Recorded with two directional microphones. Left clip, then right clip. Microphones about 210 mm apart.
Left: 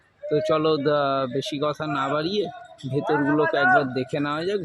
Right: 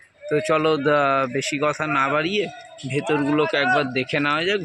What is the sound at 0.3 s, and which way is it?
Speech, centre (ahead or behind).